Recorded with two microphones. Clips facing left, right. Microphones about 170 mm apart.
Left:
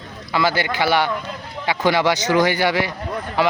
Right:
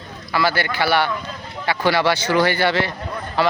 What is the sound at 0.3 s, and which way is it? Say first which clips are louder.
A man's voice: left 1 dB; 20° left (ahead or behind).